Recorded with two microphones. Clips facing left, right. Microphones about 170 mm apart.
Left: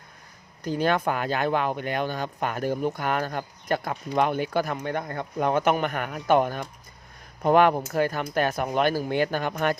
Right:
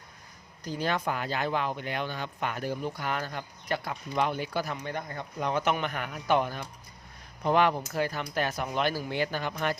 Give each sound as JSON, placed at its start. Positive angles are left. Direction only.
{"t": 0.6, "sound": "speech", "side_deg": 60}